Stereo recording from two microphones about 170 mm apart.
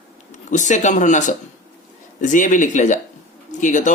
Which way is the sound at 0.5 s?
45° left (ahead or behind).